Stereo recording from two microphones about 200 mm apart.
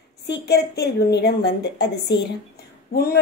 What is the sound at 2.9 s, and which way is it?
Speech, 50° left (ahead or behind).